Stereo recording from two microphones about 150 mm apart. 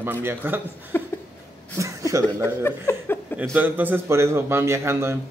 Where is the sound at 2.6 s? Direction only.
15° left (ahead or behind).